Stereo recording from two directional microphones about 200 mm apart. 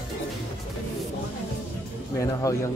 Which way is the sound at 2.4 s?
15° left (ahead or behind).